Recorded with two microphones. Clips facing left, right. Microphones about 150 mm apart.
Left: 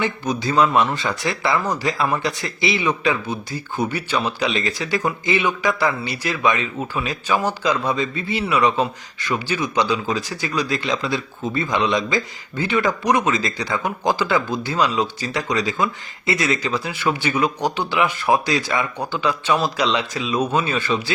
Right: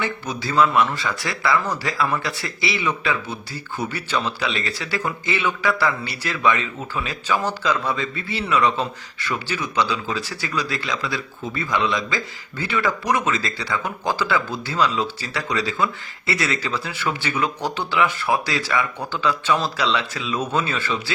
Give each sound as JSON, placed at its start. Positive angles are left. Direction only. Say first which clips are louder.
{"t": 0.0, "sound": "speech", "louder": "left 4 dB", "side_deg": 20}